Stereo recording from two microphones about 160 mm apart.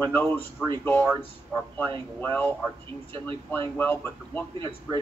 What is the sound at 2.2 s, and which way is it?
Speech, 10° left (ahead or behind).